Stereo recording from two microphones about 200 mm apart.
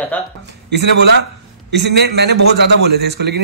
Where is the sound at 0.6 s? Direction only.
60° right (ahead or behind).